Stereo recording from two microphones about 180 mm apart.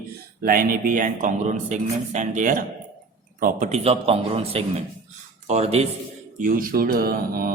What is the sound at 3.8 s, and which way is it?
Speech, 35° right (ahead or behind).